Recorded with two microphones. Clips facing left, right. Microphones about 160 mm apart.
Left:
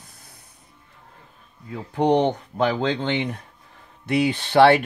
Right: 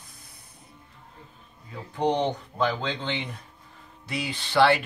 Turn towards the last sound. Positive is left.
turn(degrees=55)  # may be behind; listen again after turning